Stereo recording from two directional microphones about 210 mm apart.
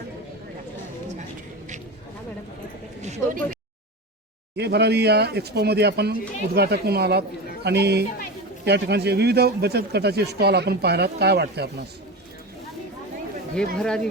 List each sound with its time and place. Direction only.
3.0 s a sound: 35° right (ahead or behind)
4.5 s speech: 50° right (ahead or behind)
13.7 s speech: 5° left (ahead or behind)